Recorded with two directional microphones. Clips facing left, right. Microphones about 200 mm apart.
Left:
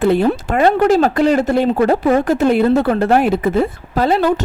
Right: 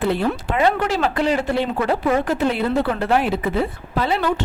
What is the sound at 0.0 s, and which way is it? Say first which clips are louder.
Speech: left 7 dB; 50° left (ahead or behind).